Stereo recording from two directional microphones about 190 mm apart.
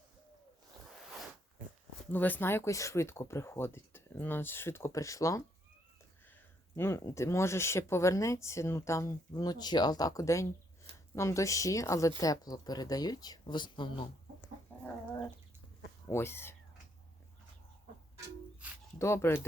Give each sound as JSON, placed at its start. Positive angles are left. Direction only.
{"t": 0.9, "sound": "zipper", "side_deg": 0}
{"t": 2.0, "sound": "speech", "side_deg": 10}
{"t": 16.0, "sound": "speech", "side_deg": 10}
{"t": 18.6, "sound": "a sound", "side_deg": -5}
{"t": 18.9, "sound": "speech", "side_deg": 15}